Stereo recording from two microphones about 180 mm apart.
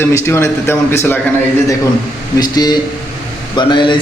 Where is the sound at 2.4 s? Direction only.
20° left (ahead or behind).